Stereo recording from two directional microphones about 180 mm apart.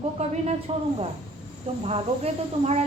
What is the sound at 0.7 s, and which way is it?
Speech, 35° right (ahead or behind).